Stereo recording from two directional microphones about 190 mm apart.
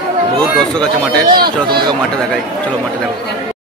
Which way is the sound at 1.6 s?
25° right (ahead or behind).